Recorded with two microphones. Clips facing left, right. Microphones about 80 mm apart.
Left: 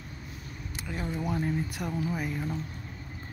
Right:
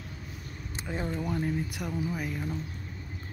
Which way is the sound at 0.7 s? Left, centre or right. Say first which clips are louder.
Right 2 dB; right.